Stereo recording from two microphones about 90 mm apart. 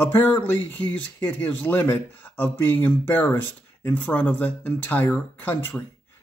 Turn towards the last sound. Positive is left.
turn(degrees=25)  # may be behind; listen again after turning